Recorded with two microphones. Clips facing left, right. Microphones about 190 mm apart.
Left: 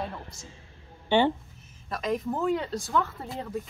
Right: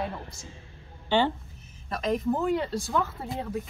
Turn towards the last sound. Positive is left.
turn(degrees=-5)  # may be behind; listen again after turning